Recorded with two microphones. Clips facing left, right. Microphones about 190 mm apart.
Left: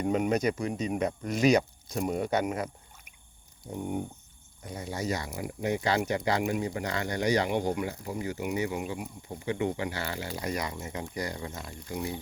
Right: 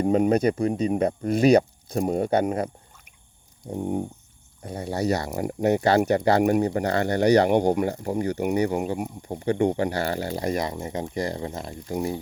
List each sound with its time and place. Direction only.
0.0 s speech: 35° right (ahead or behind)
3.8 s speech: 35° right (ahead or behind)
4.9 s speech: 65° right (ahead or behind)
5.3 s speech: 45° right (ahead or behind)
5.6 s speech: 60° right (ahead or behind)
6.4 s speech: 45° right (ahead or behind)